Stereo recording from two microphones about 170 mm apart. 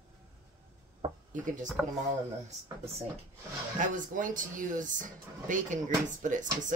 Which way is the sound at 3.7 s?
50° right (ahead or behind).